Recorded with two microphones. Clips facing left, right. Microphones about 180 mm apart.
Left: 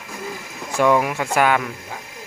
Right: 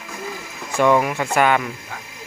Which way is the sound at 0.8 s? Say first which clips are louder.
Right 1 dB; 5° left (ahead or behind).